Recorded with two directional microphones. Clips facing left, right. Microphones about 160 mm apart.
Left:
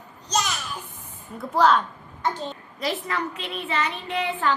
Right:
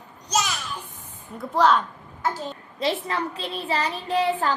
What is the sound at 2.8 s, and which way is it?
A child's voice, 30° right (ahead or behind).